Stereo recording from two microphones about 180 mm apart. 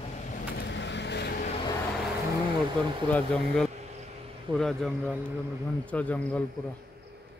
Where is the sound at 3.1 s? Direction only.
5° left (ahead or behind).